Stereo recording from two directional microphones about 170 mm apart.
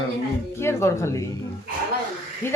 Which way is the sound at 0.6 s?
15° left (ahead or behind).